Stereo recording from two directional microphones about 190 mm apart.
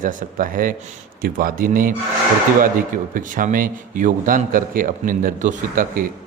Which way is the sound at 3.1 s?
45° right (ahead or behind).